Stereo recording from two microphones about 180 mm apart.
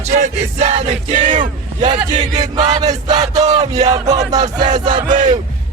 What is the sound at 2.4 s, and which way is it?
Speech, 20° right (ahead or behind).